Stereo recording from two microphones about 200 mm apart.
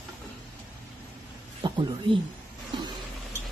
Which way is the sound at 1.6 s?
25° right (ahead or behind).